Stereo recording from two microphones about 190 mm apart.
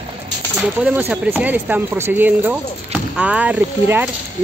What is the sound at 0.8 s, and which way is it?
Speech, 10° right (ahead or behind).